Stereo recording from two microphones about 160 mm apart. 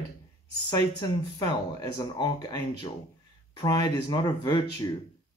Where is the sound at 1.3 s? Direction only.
25° left (ahead or behind).